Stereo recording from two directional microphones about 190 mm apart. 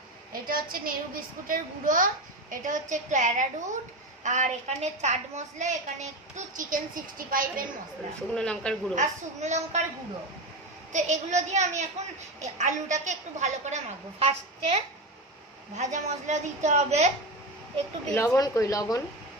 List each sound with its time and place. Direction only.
0.3 s a child's voice: 50° right (ahead or behind)
8.3 s speech: 5° left (ahead or behind)
9.0 s a woman's voice: 35° right (ahead or behind)
10.9 s a woman's voice: 40° right (ahead or behind)
18.0 s speech: 5° left (ahead or behind)
18.3 s speech: 20° left (ahead or behind)